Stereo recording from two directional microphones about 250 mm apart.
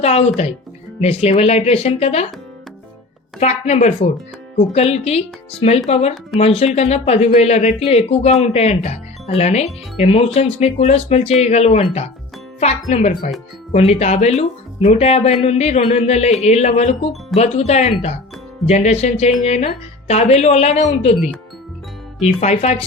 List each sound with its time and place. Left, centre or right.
0.0 s speech: left
3.4 s speech: left
22.4 s speech: left